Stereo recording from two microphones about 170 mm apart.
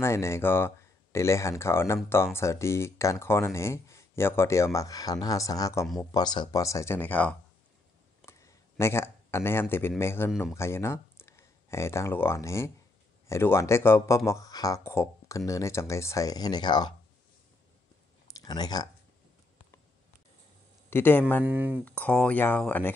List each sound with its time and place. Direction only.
0.0 s speech: 15° left (ahead or behind)
18.3 s speech: 25° left (ahead or behind)
20.9 s speech: 10° left (ahead or behind)
21.5 s speech: 10° right (ahead or behind)
21.8 s speech: 10° left (ahead or behind)